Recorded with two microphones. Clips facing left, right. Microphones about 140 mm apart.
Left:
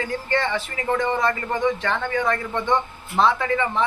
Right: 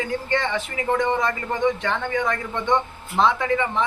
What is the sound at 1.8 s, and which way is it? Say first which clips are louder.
Speech: even; 20° right (ahead or behind).